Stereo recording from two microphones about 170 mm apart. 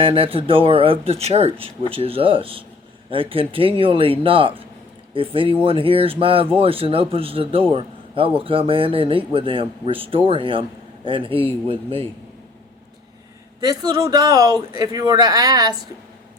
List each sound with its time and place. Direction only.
0.0 s speech: 30° right (ahead or behind)
13.6 s a man's voice: 20° right (ahead or behind)